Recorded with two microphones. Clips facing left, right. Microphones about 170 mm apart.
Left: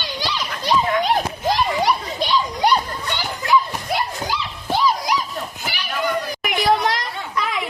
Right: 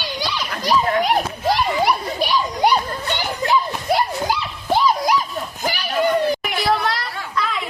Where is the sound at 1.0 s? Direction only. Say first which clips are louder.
Right 1 dB; 5° right (ahead or behind).